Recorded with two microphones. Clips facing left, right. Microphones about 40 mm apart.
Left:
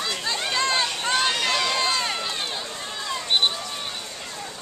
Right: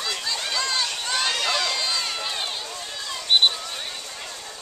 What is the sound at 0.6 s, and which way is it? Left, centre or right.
Run, left.